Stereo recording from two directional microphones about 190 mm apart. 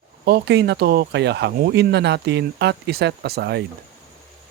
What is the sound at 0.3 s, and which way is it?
Speech, 60° right (ahead or behind).